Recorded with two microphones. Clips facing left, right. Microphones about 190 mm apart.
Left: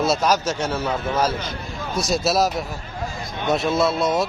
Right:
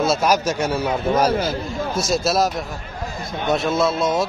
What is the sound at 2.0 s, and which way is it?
A man's voice, centre (ahead or behind).